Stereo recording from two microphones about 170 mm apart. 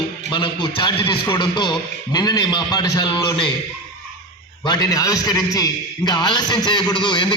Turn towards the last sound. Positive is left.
turn(degrees=25)  # may be behind; listen again after turning